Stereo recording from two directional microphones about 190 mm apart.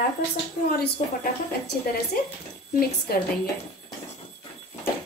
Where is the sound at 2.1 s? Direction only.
50° left (ahead or behind).